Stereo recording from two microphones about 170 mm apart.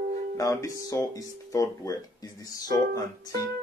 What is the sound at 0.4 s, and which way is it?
Speech, 20° left (ahead or behind).